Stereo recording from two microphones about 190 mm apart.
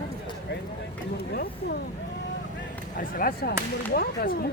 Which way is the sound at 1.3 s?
55° left (ahead or behind).